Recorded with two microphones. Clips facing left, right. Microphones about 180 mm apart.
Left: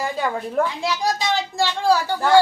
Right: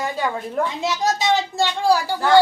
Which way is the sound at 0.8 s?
20° right (ahead or behind).